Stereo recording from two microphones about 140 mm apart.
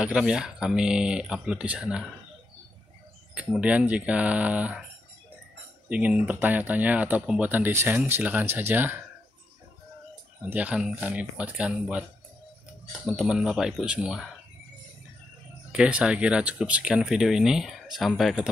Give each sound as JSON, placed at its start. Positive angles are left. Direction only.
{"t": 0.0, "sound": "speech", "side_deg": -5}
{"t": 3.5, "sound": "speech", "side_deg": -10}
{"t": 5.9, "sound": "speech", "side_deg": -10}
{"t": 10.4, "sound": "speech", "side_deg": -10}
{"t": 15.7, "sound": "speech", "side_deg": -5}